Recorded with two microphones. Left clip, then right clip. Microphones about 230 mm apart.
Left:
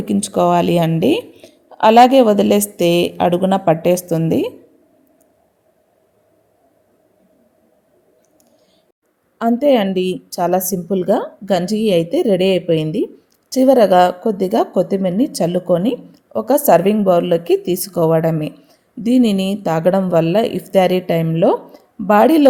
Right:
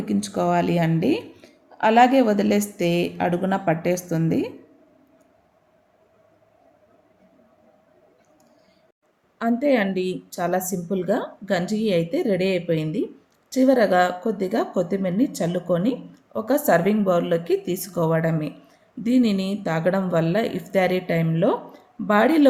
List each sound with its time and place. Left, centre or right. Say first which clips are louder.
0.0 s speech: left 8 dB; left
9.4 s a woman's voice: left 7 dB; left